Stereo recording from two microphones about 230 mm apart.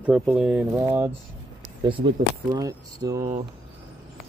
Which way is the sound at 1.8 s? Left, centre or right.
Right.